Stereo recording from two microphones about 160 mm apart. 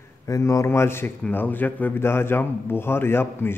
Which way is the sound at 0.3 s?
20° left (ahead or behind).